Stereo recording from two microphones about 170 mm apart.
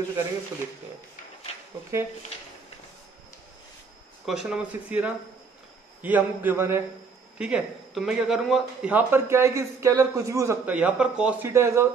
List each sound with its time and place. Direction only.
1.9 s a man's voice: 15° right (ahead or behind)
4.3 s a man's voice: 5° right (ahead or behind)
8.9 s a man's voice: 15° right (ahead or behind)